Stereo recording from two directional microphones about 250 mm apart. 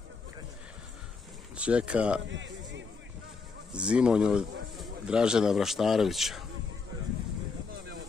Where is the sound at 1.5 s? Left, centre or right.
Centre.